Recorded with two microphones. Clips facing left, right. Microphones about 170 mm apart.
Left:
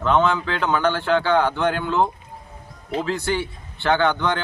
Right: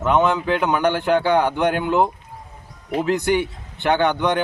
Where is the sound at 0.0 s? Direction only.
15° right (ahead or behind).